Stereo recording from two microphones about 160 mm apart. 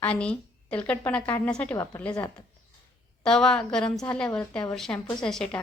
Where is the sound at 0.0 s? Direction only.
5° left (ahead or behind).